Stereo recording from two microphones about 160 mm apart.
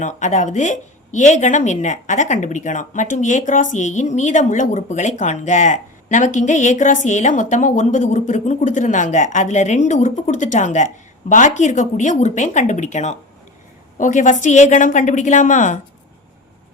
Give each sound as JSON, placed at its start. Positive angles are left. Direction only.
{"t": 0.0, "sound": "a woman's voice", "side_deg": 50}